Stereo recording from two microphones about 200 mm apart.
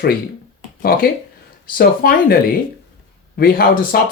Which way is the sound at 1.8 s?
50° left (ahead or behind).